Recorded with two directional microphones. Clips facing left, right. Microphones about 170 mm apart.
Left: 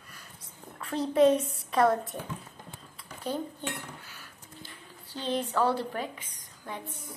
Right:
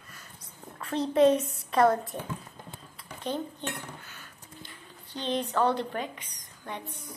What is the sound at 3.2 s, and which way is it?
Speech, 5° left (ahead or behind).